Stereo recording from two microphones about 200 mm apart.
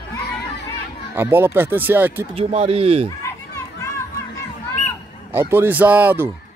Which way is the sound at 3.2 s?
15° left (ahead or behind).